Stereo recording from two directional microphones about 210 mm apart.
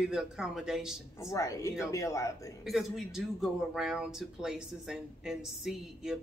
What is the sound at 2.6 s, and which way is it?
Speech, centre (ahead or behind).